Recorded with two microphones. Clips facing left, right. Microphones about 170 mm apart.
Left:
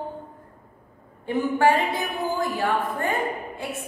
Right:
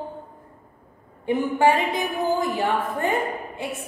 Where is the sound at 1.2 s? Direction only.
15° right (ahead or behind).